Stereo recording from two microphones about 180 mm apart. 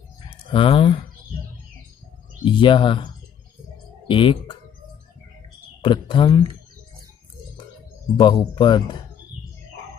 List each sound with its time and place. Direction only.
0.3 s speech: 30° left (ahead or behind)
2.4 s speech: 25° left (ahead or behind)
4.1 s speech: 30° left (ahead or behind)
5.8 s speech: 25° left (ahead or behind)
8.2 s speech: 25° left (ahead or behind)